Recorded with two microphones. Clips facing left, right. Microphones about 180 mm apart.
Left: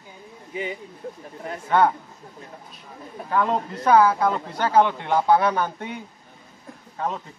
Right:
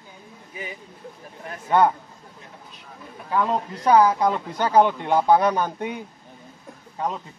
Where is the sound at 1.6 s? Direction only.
15° right (ahead or behind).